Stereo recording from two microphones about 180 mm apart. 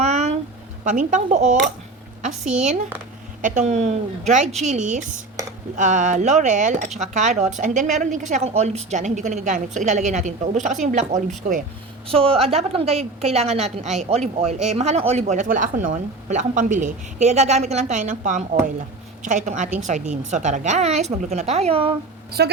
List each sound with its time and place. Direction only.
0.0 s a sound: 35° right (ahead or behind)
0.9 s a woman's voice: 45° right (ahead or behind)
3.4 s a woman's voice: 40° right (ahead or behind)
12.0 s speech: 30° right (ahead or behind)
22.4 s a woman's voice: 65° right (ahead or behind)